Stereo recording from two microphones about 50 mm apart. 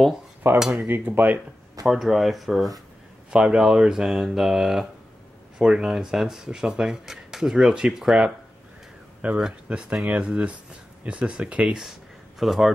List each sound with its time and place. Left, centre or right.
0.4 s speech: right
1.9 s speech: centre
3.3 s speech: centre
9.2 s speech: right
12.4 s speech: centre